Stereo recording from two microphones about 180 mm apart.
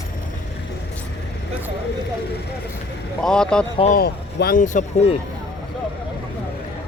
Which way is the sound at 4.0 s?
60° left (ahead or behind).